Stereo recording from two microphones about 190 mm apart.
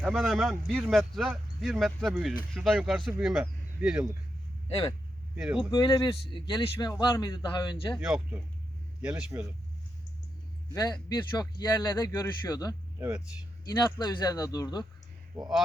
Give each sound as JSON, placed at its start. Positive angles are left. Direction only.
{"t": 0.0, "sound": "speech", "side_deg": 0}
{"t": 4.7, "sound": "speech", "side_deg": 20}
{"t": 5.4, "sound": "speech", "side_deg": -5}
{"t": 5.7, "sound": "speech", "side_deg": 20}
{"t": 7.9, "sound": "speech", "side_deg": -5}
{"t": 10.8, "sound": "speech", "side_deg": 20}
{"t": 13.0, "sound": "speech", "side_deg": -5}
{"t": 13.7, "sound": "speech", "side_deg": 20}
{"t": 15.3, "sound": "speech", "side_deg": -20}